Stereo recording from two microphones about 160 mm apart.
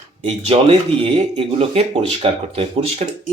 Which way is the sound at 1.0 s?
35° right (ahead or behind).